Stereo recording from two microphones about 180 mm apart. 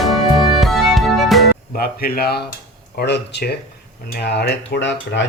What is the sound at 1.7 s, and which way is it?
Speech, 55° left (ahead or behind).